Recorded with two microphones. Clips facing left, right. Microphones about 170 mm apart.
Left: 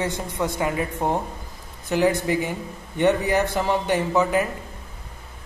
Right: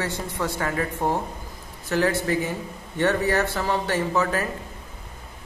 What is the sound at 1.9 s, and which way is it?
Speech, 15° left (ahead or behind).